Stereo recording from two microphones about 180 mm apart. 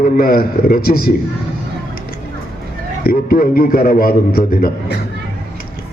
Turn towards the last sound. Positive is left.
turn(degrees=60)  # may be behind; listen again after turning